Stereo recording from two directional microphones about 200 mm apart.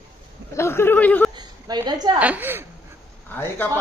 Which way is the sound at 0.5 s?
10° left (ahead or behind).